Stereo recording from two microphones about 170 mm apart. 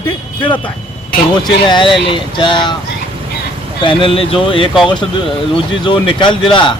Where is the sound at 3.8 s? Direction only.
30° left (ahead or behind).